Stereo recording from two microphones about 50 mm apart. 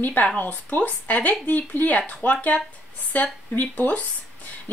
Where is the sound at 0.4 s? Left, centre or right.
Left.